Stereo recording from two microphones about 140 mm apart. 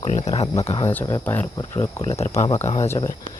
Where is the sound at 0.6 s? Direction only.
40° left (ahead or behind).